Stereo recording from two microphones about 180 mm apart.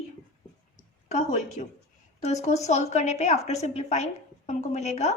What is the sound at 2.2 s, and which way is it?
A woman's voice, 40° left (ahead or behind).